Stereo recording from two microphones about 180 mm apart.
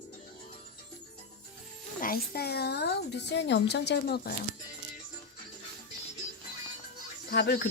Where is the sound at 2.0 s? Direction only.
55° left (ahead or behind).